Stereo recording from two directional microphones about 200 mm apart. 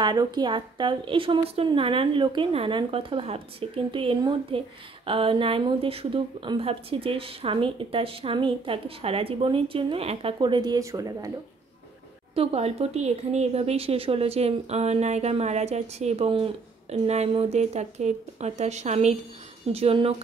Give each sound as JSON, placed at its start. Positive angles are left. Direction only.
{"t": 0.0, "sound": "a woman's voice", "side_deg": -20}
{"t": 12.4, "sound": "a woman's voice", "side_deg": -30}